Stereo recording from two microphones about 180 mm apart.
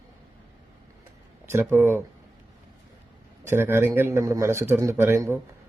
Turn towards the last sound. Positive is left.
turn(degrees=-15)  # may be behind; listen again after turning